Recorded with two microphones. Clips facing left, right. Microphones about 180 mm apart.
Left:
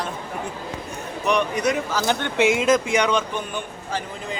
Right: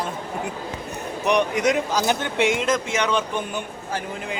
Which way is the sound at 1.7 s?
20° right (ahead or behind).